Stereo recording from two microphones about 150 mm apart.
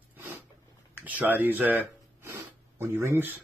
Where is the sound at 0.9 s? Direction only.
10° right (ahead or behind).